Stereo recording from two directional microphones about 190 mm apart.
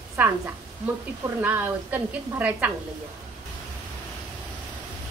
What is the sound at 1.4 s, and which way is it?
A woman's voice, 10° right (ahead or behind).